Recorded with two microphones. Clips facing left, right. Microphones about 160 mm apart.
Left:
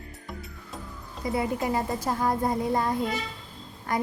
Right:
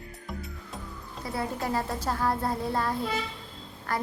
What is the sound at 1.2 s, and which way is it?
A woman's voice, 20° left (ahead or behind).